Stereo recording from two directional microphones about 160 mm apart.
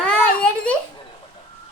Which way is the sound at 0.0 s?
5° left (ahead or behind).